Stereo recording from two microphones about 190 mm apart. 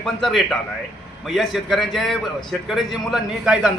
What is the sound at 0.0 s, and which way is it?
A man's voice, centre (ahead or behind).